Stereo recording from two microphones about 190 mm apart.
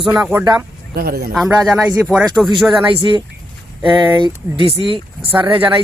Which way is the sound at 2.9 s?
25° right (ahead or behind).